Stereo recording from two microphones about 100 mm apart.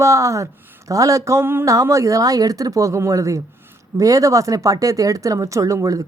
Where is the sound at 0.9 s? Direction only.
35° right (ahead or behind).